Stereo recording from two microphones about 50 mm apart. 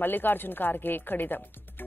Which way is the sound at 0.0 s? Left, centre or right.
Left.